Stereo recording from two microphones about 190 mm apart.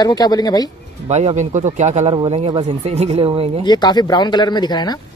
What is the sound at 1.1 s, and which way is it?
A man's voice, 35° right (ahead or behind).